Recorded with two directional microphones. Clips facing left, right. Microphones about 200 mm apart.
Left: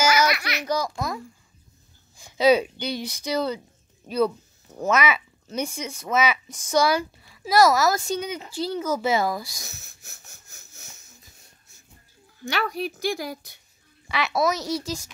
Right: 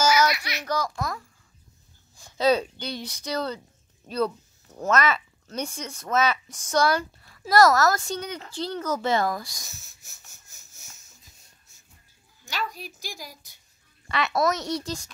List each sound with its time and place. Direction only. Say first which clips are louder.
0.0 s baby laughter: even; 70° left (ahead or behind)
0.7 s speech: left 1 dB; 15° left (ahead or behind)
4.7 s a child's voice: left 1 dB; 10° left (ahead or behind)
9.8 s wheeze: left 4 dB; 60° left (ahead or behind)
12.4 s a woman's voice: left 7 dB; 65° left (ahead or behind)
14.0 s a child's voice: left 1 dB; centre (ahead or behind)